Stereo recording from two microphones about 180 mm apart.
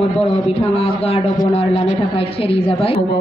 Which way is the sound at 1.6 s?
30° left (ahead or behind).